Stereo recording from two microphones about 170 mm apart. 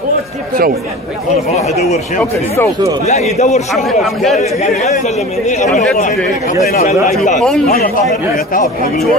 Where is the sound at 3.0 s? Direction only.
40° left (ahead or behind).